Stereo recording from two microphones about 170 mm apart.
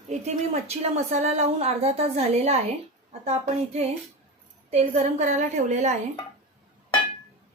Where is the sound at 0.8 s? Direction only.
40° right (ahead or behind).